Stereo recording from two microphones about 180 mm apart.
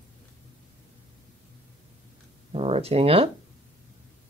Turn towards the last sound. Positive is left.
turn(degrees=-35)  # may be behind; listen again after turning